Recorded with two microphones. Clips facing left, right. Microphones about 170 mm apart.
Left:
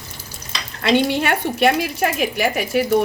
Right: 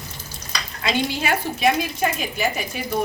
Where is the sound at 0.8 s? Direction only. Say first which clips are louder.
Left 6 dB; 70° left (ahead or behind).